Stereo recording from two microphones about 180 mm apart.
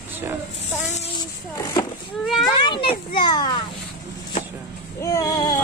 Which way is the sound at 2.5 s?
25° left (ahead or behind).